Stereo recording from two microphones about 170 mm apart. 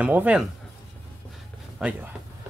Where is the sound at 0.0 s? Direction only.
10° right (ahead or behind).